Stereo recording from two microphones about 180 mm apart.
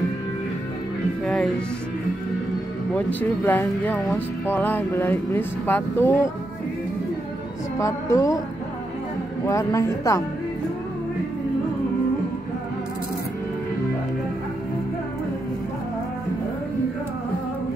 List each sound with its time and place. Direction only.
1.2 s speech: centre (ahead or behind)
2.9 s speech: 10° left (ahead or behind)
7.8 s speech: 15° left (ahead or behind)
9.5 s speech: 20° left (ahead or behind)